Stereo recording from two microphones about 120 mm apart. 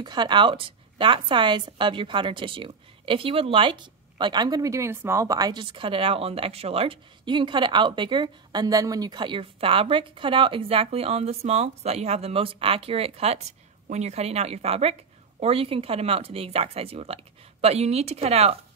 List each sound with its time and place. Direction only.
0.0 s a woman's voice: 40° right (ahead or behind); by 18.6 s 60° right (ahead or behind)